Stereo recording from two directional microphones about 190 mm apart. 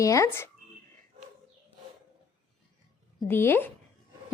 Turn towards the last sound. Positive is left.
turn(degrees=10)  # may be behind; listen again after turning